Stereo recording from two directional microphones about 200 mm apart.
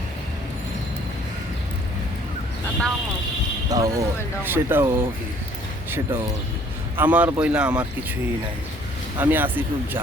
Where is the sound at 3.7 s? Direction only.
15° right (ahead or behind).